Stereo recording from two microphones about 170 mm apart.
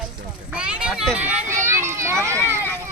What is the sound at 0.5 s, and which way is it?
Children playing, 5° right (ahead or behind).